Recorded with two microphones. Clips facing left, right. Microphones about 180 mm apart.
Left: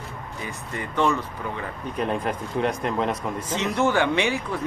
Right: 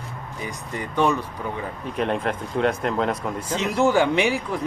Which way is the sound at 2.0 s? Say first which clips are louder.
Right 2 dB; centre (ahead or behind).